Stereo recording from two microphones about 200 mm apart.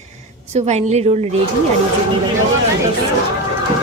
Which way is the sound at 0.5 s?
35° right (ahead or behind).